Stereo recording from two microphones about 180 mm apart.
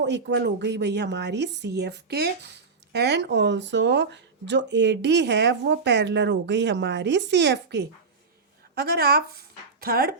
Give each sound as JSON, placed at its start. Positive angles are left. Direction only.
{"t": 0.0, "sound": "a woman's voice", "side_deg": -75}
{"t": 8.7, "sound": "speech", "side_deg": -60}